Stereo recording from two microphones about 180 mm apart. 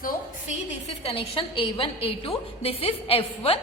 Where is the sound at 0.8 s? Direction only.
35° left (ahead or behind).